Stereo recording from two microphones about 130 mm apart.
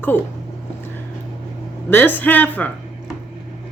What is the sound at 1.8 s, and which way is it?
Speech, 15° left (ahead or behind).